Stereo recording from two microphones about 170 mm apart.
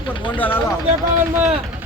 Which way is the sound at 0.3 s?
10° left (ahead or behind).